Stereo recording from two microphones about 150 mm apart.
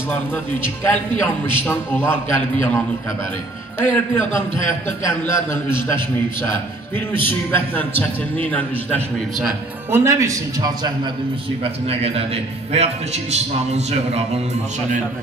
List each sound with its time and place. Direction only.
0.1 s a man's voice: 15° left (ahead or behind)
3.8 s a man's voice: 15° left (ahead or behind)
7.2 s a man's voice: 15° left (ahead or behind)
9.8 s a man's voice: 15° right (ahead or behind)
11.9 s a man's voice: 40° right (ahead or behind)